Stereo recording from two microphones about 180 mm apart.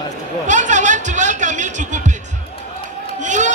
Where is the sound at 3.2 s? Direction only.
40° right (ahead or behind).